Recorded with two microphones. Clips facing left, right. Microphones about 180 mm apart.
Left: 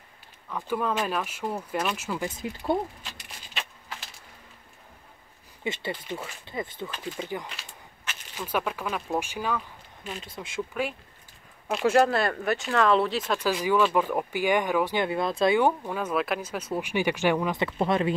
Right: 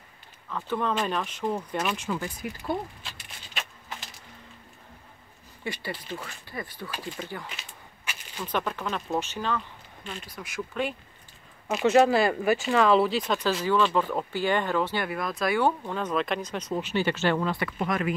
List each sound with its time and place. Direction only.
0.5 s speech: 10° left (ahead or behind)
2.2 s speech: 25° left (ahead or behind)
3.5 s a sound: centre (ahead or behind)
5.6 s speech: 20° left (ahead or behind)
7.4 s a sound: 5° right (ahead or behind)
8.4 s speech: 10° left (ahead or behind)
10.2 s speech: 25° left (ahead or behind)
10.7 s speech: 5° left (ahead or behind)
13.5 s speech: 10° left (ahead or behind)
15.0 s speech: 25° left (ahead or behind)
15.8 s speech: 10° left (ahead or behind); by 18.1 s 30° left (ahead or behind)